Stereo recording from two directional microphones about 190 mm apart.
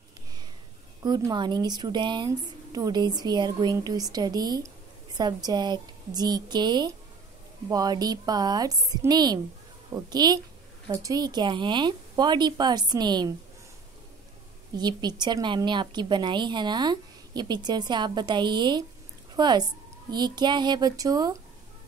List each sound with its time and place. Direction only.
1.0 s a woman's voice: 20° right (ahead or behind)
14.8 s a woman's voice: 20° right (ahead or behind)